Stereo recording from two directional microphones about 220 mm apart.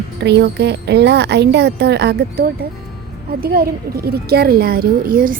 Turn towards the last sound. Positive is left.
turn(degrees=-40)  # may be behind; listen again after turning